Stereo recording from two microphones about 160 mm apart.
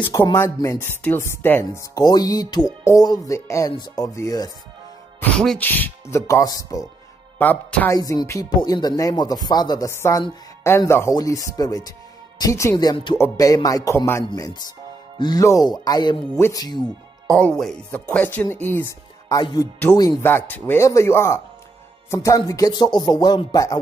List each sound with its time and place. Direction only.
0.0 s speech: 20° left (ahead or behind)
5.2 s speech: 5° left (ahead or behind); by 6.9 s 20° left (ahead or behind)
7.3 s speech: 10° left (ahead or behind)
17.3 s speech: 5° left (ahead or behind); by 23.8 s 20° left (ahead or behind)